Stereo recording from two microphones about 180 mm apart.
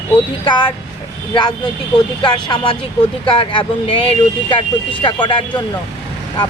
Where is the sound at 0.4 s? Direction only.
25° left (ahead or behind).